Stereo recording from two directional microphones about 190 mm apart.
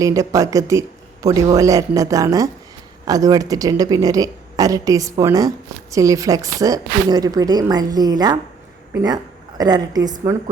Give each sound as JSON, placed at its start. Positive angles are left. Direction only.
{"t": 0.0, "sound": "a woman's voice", "side_deg": -15}